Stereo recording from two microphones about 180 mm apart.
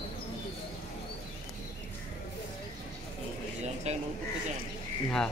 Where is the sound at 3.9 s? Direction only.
35° right (ahead or behind).